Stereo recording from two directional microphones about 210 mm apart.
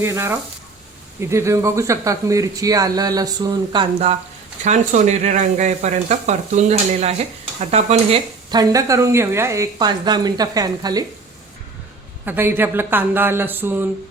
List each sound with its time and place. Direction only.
0.0 s speech: 10° right (ahead or behind)
4.6 s speech: 35° right (ahead or behind); by 11.0 s 15° right (ahead or behind)
12.2 s speech: 10° right (ahead or behind)